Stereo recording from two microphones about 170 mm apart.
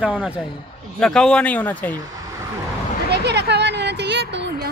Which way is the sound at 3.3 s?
80° right.